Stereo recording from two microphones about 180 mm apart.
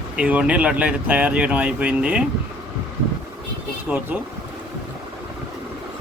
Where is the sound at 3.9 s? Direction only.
10° right (ahead or behind).